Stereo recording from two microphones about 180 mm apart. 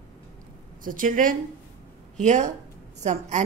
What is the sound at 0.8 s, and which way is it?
A woman's voice, 50° right (ahead or behind).